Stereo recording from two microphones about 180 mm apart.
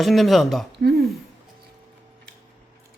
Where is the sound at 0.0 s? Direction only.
Centre (ahead or behind).